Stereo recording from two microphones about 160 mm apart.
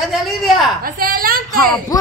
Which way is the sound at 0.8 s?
65° right (ahead or behind).